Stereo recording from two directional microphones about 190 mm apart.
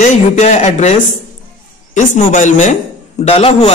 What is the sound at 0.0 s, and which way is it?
Speech, 35° left (ahead or behind).